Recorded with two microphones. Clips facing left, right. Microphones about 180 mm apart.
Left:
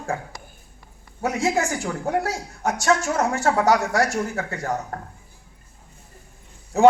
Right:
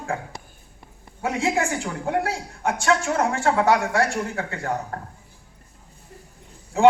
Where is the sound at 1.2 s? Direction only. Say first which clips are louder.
Left 1 dB; 40° left (ahead or behind).